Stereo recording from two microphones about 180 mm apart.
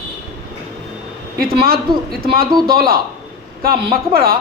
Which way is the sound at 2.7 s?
55° right (ahead or behind).